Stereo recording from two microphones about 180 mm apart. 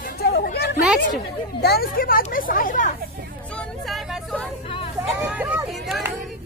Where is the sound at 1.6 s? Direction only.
60° left (ahead or behind).